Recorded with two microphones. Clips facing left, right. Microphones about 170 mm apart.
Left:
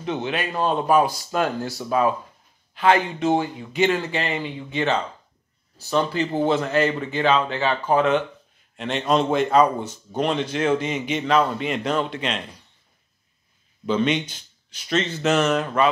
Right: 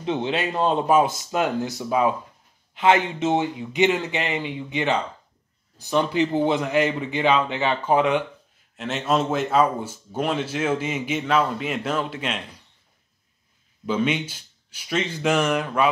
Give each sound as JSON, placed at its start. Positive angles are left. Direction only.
{"t": 0.0, "sound": "a man's voice", "side_deg": -25}
{"t": 13.8, "sound": "a man's voice", "side_deg": -10}